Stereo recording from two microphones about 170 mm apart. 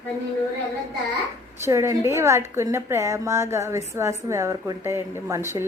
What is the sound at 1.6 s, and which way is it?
A woman's voice, 15° right (ahead or behind).